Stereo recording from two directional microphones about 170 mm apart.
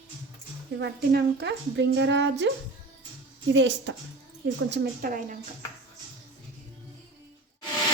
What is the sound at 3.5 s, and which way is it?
A woman's voice, 90° right.